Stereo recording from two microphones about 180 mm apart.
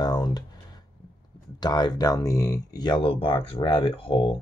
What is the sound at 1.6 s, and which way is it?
Speech, 25° left (ahead or behind).